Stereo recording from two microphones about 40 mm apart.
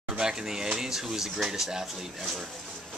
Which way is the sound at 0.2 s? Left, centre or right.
Centre.